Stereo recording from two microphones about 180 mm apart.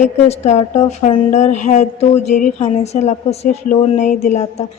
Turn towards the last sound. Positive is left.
turn(degrees=40)  # may be behind; listen again after turning